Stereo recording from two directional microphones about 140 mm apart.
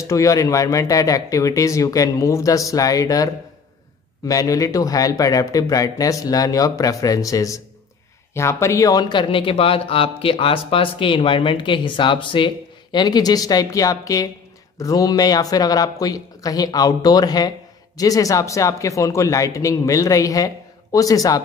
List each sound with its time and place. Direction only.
0.0 s speech: 20° left (ahead or behind)
4.3 s speech: 25° left (ahead or behind)